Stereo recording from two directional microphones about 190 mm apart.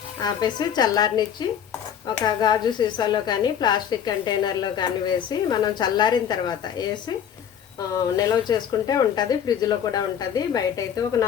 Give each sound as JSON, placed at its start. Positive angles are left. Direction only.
{"t": 0.2, "sound": "a woman's voice", "side_deg": 20}
{"t": 7.9, "sound": "a woman's voice", "side_deg": 20}